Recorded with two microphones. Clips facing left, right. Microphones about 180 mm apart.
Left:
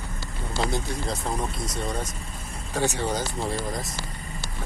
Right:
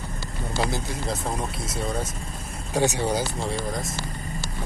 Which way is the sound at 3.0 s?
10° right (ahead or behind).